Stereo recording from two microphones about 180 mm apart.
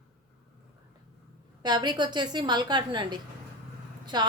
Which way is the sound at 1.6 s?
25° right (ahead or behind).